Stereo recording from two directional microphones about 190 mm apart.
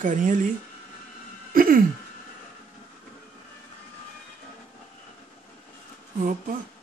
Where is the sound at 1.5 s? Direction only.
50° right (ahead or behind).